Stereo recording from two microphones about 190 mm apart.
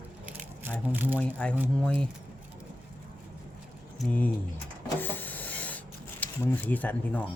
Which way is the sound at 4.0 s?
10° left (ahead or behind).